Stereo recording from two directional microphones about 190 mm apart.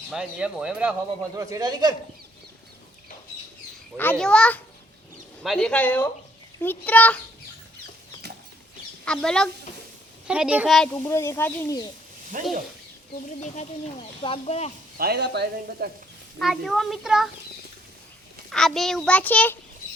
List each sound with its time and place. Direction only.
0.1 s a child's voice: 5° right (ahead or behind)
1.4 s a man's voice: 15° right (ahead or behind)
3.9 s speech: 10° left (ahead or behind)
9.0 s a child's voice: 5° left (ahead or behind)
11.0 s speech: 15° left (ahead or behind)
12.3 s speech: 45° right (ahead or behind)
13.4 s speech: 35° left (ahead or behind)
14.9 s speech: 55° right (ahead or behind)
16.4 s a child's voice: centre (ahead or behind)
18.5 s a child's voice: centre (ahead or behind)